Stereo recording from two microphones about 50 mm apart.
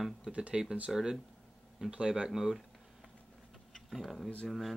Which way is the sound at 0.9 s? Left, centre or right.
Centre.